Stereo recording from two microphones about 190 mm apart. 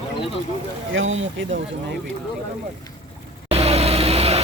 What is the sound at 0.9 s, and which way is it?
Speech, 90° right.